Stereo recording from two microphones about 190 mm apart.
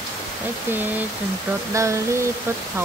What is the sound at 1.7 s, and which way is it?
Female singing, 15° right (ahead or behind).